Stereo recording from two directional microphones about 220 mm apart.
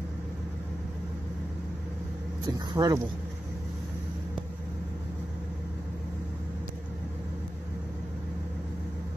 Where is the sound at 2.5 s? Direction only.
15° right (ahead or behind).